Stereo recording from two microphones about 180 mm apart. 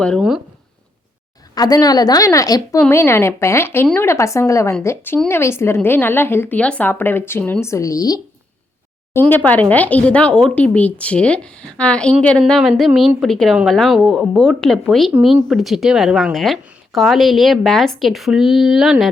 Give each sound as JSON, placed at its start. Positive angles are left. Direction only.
{"t": 0.0, "sound": "speech", "side_deg": 0}
{"t": 1.5, "sound": "speech", "side_deg": 20}
{"t": 9.2, "sound": "speech", "side_deg": 10}